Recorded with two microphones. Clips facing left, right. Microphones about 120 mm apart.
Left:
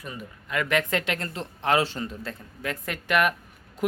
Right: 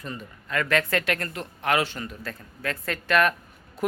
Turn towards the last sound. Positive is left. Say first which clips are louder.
# right 1 dB
turn(degrees=15)  # may be behind; listen again after turning